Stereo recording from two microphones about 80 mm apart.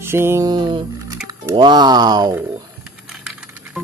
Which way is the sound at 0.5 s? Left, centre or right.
Right.